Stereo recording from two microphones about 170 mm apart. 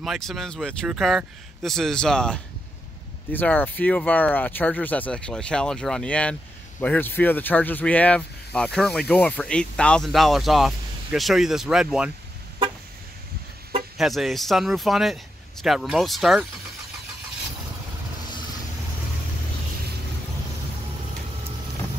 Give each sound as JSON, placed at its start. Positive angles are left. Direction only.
{"t": 0.0, "sound": "speech", "side_deg": 0}
{"t": 13.9, "sound": "speech", "side_deg": 0}